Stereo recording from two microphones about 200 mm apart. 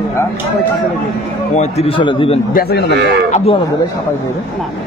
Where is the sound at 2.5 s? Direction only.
55° left (ahead or behind).